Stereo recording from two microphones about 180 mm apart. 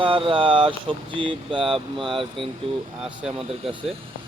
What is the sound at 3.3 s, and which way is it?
Speech, 30° right (ahead or behind).